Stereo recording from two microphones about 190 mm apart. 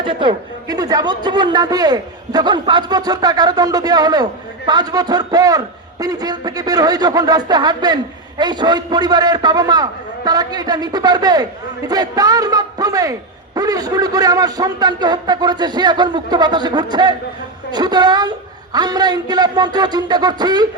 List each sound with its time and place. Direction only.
0.0 s a man's voice: 25° right (ahead or behind)